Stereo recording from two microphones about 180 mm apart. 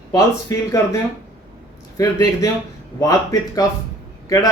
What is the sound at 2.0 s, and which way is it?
A man's voice, 20° left (ahead or behind).